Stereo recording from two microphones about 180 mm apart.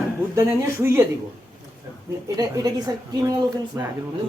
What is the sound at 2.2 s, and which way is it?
A woman's voice, 20° right (ahead or behind).